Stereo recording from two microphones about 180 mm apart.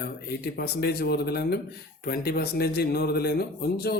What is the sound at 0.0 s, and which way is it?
A man's voice, 60° left (ahead or behind).